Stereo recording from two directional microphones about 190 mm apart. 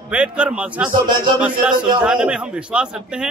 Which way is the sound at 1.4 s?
5° right (ahead or behind).